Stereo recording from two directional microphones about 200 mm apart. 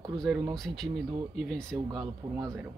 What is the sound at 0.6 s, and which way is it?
Speech, centre (ahead or behind).